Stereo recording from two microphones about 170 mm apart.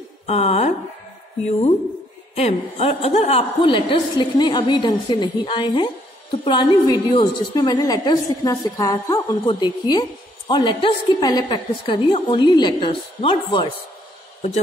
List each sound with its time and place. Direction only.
0.3 s speech: 40° left (ahead or behind)
2.3 s a woman's voice: 40° left (ahead or behind)